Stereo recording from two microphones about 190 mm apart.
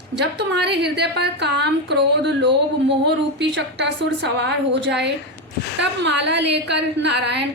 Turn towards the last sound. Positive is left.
turn(degrees=-65)  # may be behind; listen again after turning